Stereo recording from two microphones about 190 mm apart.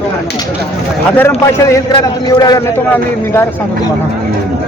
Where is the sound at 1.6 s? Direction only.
20° left (ahead or behind).